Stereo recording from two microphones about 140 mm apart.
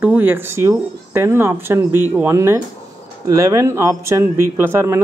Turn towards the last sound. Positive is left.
turn(degrees=-15)  # may be behind; listen again after turning